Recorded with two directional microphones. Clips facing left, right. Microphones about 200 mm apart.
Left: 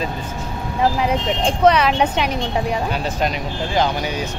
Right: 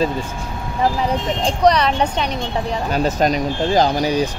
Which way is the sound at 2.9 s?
40° right (ahead or behind).